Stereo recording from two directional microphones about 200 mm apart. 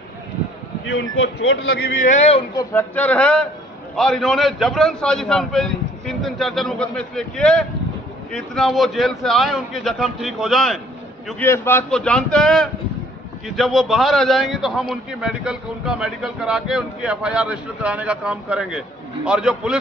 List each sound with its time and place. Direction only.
0.8 s speech: 60° left (ahead or behind)
2.0 s speech: 35° left (ahead or behind)
2.5 s a man's voice: 10° left (ahead or behind)